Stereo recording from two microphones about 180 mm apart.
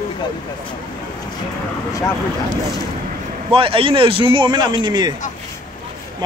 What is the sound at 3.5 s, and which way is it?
A man's voice, 30° right (ahead or behind).